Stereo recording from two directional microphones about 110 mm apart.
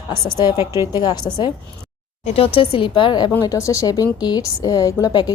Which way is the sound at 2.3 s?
55° left (ahead or behind).